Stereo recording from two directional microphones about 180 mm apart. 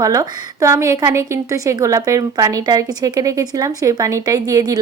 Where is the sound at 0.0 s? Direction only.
20° right (ahead or behind).